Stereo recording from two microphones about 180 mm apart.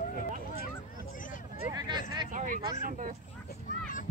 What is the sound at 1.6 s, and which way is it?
Speech, 20° right (ahead or behind).